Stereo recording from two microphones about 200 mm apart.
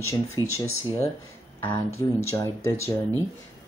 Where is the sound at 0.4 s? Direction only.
20° left (ahead or behind).